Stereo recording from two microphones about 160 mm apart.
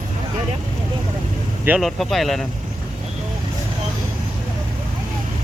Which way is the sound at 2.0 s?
Centre (ahead or behind).